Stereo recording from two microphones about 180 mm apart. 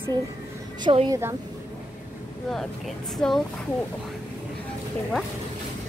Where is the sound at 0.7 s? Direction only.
25° right (ahead or behind).